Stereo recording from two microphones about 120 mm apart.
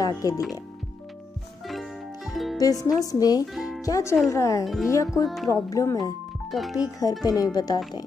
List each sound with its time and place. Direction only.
0.0 s speech: 30° left (ahead or behind)
1.7 s music: centre (ahead or behind)
2.6 s speech: 30° left (ahead or behind)
3.5 s music: centre (ahead or behind)
3.8 s speech: 25° left (ahead or behind)
5.2 s speech: centre (ahead or behind)
5.5 s speech: 30° left (ahead or behind)
6.5 s speech: centre (ahead or behind)
7.2 s speech: 35° left (ahead or behind)